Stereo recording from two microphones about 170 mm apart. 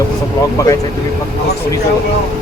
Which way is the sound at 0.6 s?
20° left (ahead or behind).